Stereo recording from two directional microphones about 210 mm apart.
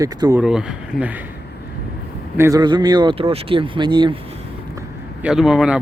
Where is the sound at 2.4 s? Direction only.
15° right (ahead or behind).